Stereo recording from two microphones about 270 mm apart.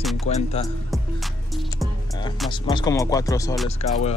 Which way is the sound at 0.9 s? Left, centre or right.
Centre.